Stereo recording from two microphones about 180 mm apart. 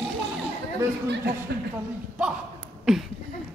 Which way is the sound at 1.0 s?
70° right (ahead or behind).